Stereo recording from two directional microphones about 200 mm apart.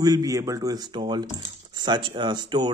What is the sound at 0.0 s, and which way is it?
Speech, 15° right (ahead or behind).